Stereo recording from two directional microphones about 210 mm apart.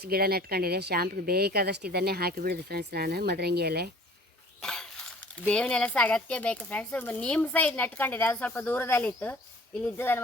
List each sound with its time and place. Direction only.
0.0 s speech: 45° right (ahead or behind)
4.6 s speech: 5° left (ahead or behind)